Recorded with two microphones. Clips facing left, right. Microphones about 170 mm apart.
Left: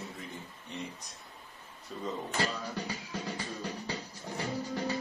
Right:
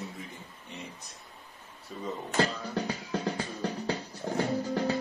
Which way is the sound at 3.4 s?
60° right (ahead or behind).